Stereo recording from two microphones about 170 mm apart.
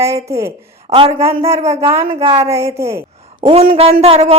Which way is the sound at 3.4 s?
35° right (ahead or behind).